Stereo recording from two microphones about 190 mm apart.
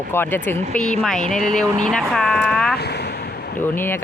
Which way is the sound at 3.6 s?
10° left (ahead or behind).